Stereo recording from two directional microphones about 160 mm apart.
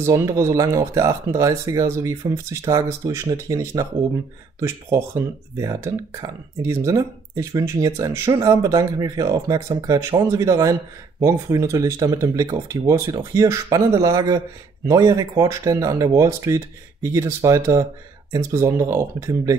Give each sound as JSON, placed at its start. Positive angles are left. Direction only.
{"t": 0.0, "sound": "speech", "side_deg": -20}